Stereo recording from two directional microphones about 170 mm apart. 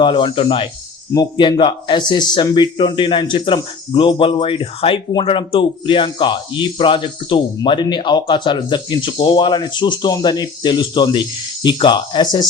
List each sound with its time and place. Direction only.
0.0 s speech: 25° left (ahead or behind)